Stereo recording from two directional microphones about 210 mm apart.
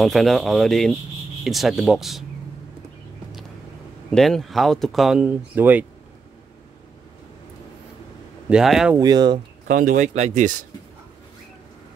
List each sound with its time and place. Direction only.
0.0 s speech: centre (ahead or behind)
4.1 s speech: centre (ahead or behind)
8.5 s speech: 5° right (ahead or behind)
8.9 s speech: 20° right (ahead or behind)
9.7 s speech: 40° right (ahead or behind)